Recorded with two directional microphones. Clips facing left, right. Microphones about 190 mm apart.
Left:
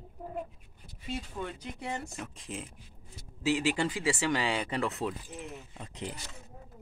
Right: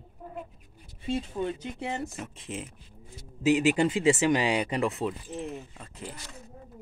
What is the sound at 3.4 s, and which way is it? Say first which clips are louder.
Speech: right 6 dB; 20° right (ahead or behind).